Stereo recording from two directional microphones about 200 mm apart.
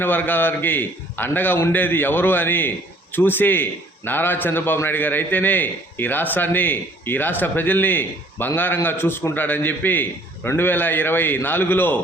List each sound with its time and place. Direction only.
0.0 s a man's voice: 10° left (ahead or behind)